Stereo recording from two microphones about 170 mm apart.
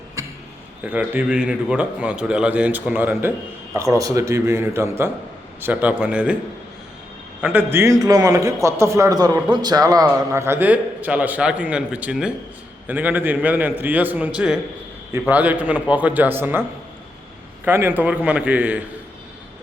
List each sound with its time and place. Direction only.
0.2 s basketball bounce: 20° right (ahead or behind)
0.9 s a man's voice: 10° right (ahead or behind)
7.4 s a man's voice: 15° right (ahead or behind)
17.7 s a man's voice: 10° right (ahead or behind)